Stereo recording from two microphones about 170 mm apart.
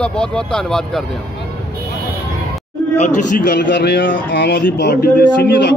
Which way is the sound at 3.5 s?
80° left.